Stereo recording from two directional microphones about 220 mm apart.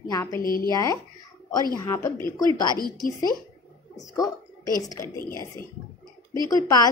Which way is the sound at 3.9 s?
15° left (ahead or behind).